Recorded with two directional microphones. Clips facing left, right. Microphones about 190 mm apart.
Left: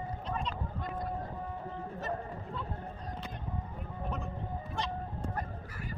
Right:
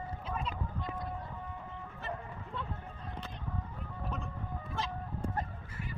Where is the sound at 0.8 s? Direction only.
50° left (ahead or behind).